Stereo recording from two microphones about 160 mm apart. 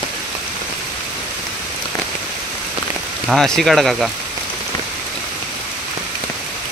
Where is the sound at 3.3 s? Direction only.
Centre (ahead or behind).